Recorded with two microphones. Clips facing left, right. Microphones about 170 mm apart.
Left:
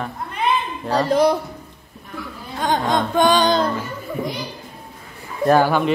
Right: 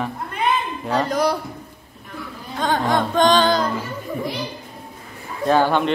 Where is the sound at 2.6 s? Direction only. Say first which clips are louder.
Even; 15° left (ahead or behind).